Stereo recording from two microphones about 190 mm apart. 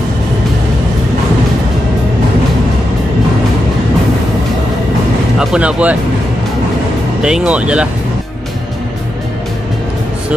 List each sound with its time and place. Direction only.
5.4 s speech: 5° right (ahead or behind)
7.2 s speech: 5° right (ahead or behind)